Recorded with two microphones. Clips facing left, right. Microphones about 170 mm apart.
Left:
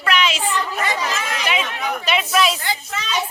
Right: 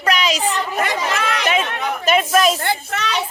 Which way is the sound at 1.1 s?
65° right (ahead or behind).